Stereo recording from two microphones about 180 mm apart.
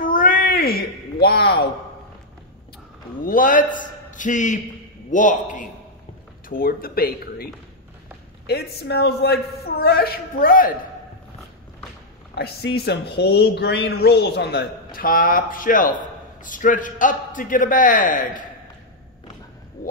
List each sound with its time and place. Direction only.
0.0 s a sound: 50° left (ahead or behind)
3.3 s a man's voice: 50° left (ahead or behind)
8.5 s speech: 65° left (ahead or behind)
12.4 s a man's voice: 65° left (ahead or behind); by 18.4 s 45° left (ahead or behind)
19.8 s speech: 50° left (ahead or behind)